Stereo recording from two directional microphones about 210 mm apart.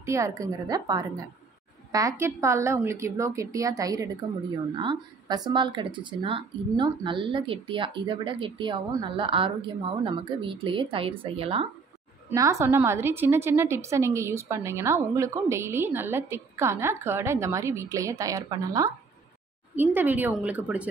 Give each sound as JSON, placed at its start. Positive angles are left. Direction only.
{"t": 0.0, "sound": "a woman's voice", "side_deg": -15}
{"t": 12.3, "sound": "a woman's voice", "side_deg": -15}